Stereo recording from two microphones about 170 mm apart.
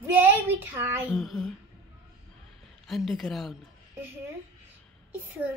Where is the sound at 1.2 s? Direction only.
Centre (ahead or behind).